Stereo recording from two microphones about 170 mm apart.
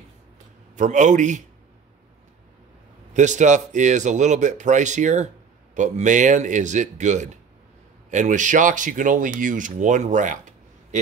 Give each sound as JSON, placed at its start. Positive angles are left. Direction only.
{"t": 0.7, "sound": "speech", "side_deg": -45}
{"t": 3.1, "sound": "speech", "side_deg": -45}